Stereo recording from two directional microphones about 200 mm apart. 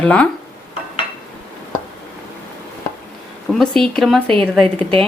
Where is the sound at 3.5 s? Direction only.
Centre (ahead or behind).